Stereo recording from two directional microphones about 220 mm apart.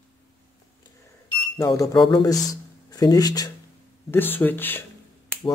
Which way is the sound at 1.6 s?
15° left (ahead or behind).